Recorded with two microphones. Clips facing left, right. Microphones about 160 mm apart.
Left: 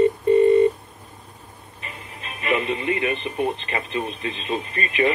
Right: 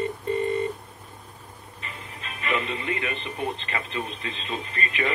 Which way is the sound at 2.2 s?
20° left (ahead or behind).